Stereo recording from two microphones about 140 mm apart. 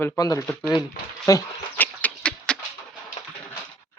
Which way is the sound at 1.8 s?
10° left (ahead or behind).